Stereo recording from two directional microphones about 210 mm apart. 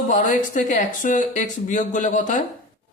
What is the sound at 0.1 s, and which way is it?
Speech, 35° left (ahead or behind).